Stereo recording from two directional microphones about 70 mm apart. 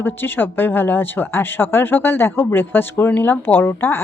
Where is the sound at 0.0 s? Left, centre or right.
Left.